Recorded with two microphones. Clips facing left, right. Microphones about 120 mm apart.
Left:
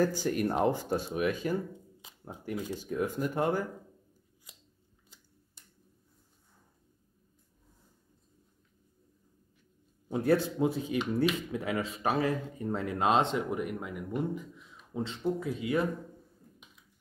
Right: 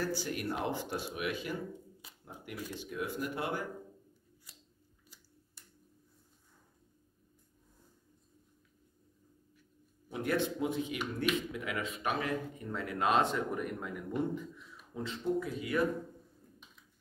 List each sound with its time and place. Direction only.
0.0 s speech: 45° left (ahead or behind)
4.5 s scissors: 15° left (ahead or behind)
10.0 s speech: 30° left (ahead or behind)
13.5 s speech: 10° left (ahead or behind)
15.0 s speech: 25° left (ahead or behind)